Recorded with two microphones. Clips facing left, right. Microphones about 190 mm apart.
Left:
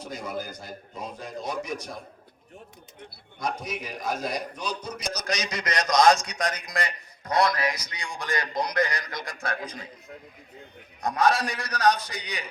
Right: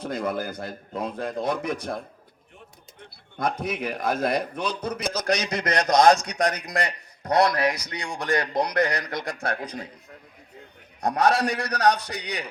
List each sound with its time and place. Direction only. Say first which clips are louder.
0.0 s a man's voice: right 6 dB; 55° right (ahead or behind)
3.3 s a man's voice: right 4 dB; 55° right (ahead or behind)
11.0 s a man's voice: right 2 dB; 65° right (ahead or behind)